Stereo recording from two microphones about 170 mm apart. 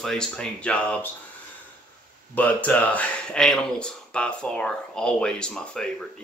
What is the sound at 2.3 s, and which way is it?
Speech, 10° left (ahead or behind).